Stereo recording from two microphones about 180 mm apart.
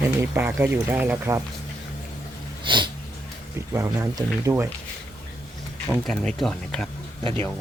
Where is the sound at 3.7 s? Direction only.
15° right (ahead or behind).